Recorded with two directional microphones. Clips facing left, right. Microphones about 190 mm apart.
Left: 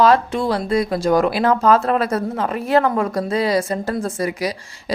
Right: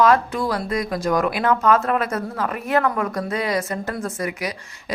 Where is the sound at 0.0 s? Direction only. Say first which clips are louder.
Left 2 dB; 25° left (ahead or behind).